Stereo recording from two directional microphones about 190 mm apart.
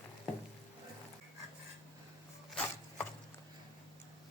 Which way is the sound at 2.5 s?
5° left (ahead or behind).